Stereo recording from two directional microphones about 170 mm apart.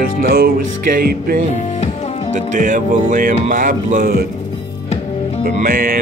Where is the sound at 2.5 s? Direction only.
50° right (ahead or behind).